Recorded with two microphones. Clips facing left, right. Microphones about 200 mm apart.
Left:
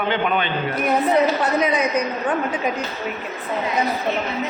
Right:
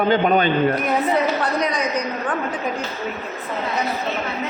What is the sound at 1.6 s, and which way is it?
Speech, 5° left (ahead or behind).